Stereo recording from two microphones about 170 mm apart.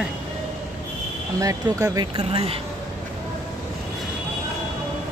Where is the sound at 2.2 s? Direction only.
35° right (ahead or behind).